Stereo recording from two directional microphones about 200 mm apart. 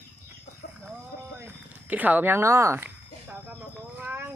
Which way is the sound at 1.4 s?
10° right (ahead or behind).